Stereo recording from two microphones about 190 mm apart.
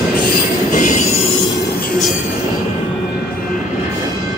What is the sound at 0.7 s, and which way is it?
Train, 40° left (ahead or behind).